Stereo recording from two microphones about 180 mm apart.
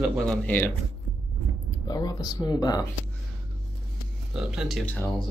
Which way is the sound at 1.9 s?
20° left (ahead or behind).